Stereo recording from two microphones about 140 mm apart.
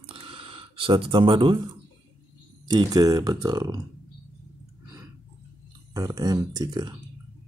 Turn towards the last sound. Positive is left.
turn(degrees=-30)  # may be behind; listen again after turning